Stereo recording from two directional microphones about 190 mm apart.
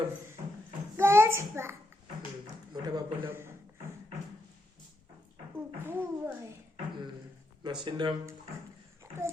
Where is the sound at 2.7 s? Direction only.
25° right (ahead or behind).